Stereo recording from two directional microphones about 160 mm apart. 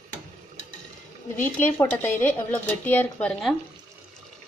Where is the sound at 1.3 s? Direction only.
10° left (ahead or behind).